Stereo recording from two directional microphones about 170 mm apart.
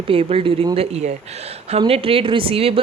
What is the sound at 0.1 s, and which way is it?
Speech, 35° right (ahead or behind).